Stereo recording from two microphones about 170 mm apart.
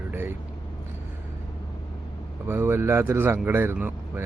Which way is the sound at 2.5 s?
15° right (ahead or behind).